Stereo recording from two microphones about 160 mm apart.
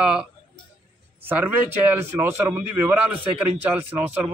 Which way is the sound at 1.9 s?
10° right (ahead or behind).